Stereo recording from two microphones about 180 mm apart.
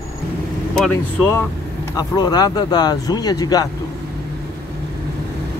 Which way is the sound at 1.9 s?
20° left (ahead or behind).